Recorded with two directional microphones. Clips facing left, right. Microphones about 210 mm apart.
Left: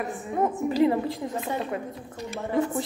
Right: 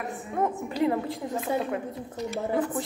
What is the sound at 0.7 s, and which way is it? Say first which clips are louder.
Speech: left 4 dB; centre (ahead or behind).